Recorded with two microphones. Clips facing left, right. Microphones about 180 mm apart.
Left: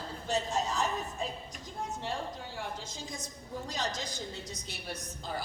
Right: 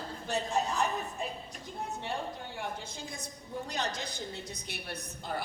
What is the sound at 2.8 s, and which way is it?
A woman's voice, 60° right (ahead or behind).